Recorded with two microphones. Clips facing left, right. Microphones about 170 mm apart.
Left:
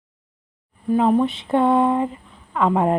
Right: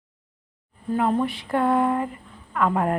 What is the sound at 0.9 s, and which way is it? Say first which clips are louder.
A woman's voice: left 5 dB; 15° left (ahead or behind).